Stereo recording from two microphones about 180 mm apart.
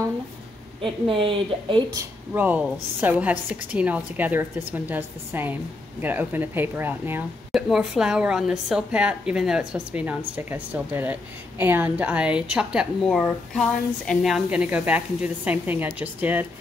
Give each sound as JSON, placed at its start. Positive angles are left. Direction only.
{"t": 0.8, "sound": "a woman's voice", "side_deg": -30}
{"t": 2.3, "sound": "a woman's voice", "side_deg": -10}